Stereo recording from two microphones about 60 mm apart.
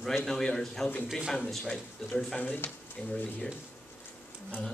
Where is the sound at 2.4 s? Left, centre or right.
Left.